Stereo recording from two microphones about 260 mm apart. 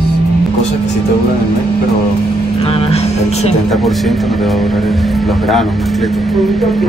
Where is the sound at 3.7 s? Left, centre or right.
Centre.